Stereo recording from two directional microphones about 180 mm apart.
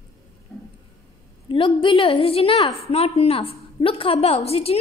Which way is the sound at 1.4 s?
30° left (ahead or behind).